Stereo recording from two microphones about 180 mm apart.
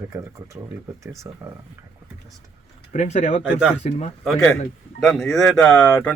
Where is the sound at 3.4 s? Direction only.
5° right (ahead or behind).